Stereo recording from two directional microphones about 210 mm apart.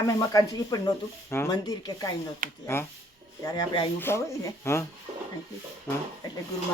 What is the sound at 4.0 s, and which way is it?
Speech, 10° left (ahead or behind).